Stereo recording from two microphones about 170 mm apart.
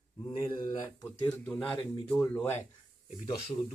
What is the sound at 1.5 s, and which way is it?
Speech, 5° left (ahead or behind).